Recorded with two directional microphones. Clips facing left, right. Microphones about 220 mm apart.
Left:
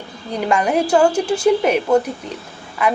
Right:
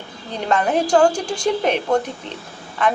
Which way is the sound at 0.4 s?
10° left (ahead or behind).